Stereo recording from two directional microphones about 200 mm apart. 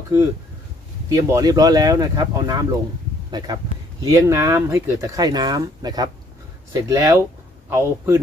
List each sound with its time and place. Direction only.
1.0 s speech: 15° right (ahead or behind)